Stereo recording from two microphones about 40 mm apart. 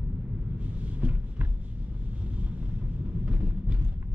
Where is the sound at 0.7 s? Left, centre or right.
Right.